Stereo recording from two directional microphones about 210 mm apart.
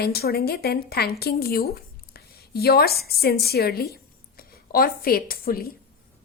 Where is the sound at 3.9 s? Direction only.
45° left (ahead or behind).